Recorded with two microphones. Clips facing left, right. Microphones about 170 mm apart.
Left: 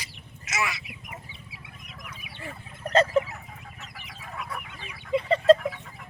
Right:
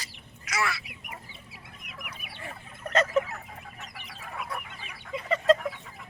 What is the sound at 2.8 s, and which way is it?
Fowl, 30° left (ahead or behind).